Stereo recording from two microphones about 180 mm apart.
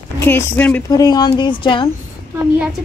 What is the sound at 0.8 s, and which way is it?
Speech, 20° left (ahead or behind).